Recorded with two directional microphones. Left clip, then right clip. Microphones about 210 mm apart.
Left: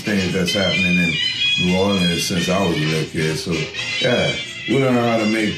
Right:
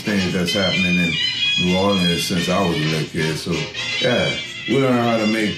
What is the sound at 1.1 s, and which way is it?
Music, 50° right (ahead or behind).